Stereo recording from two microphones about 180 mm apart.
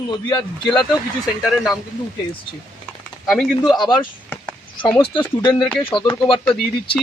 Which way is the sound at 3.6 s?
25° left (ahead or behind).